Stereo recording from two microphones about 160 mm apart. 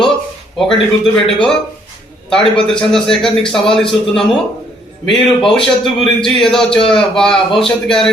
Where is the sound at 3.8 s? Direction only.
30° left (ahead or behind).